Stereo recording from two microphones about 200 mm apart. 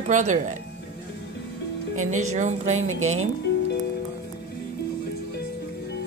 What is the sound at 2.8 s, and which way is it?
Speech, 90° right.